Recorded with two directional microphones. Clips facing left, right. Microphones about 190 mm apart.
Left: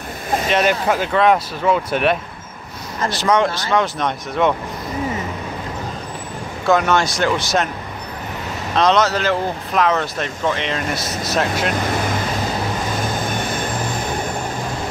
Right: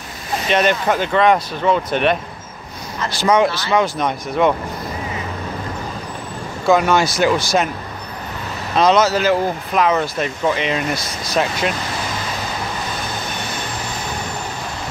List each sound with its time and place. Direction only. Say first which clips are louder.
0.5 s speech: right 1 dB; 5° left (ahead or behind)
3.2 s speech: right 2 dB; centre (ahead or behind)
6.6 s speech: right 2 dB; centre (ahead or behind)
8.7 s speech: right 2 dB; 5° right (ahead or behind)
13.2 s vehicle: left 4 dB; 50° left (ahead or behind)